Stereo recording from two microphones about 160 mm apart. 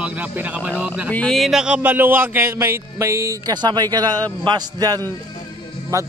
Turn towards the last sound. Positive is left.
turn(degrees=-20)  # may be behind; listen again after turning